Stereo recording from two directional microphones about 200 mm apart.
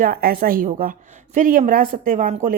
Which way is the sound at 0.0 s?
50° right (ahead or behind).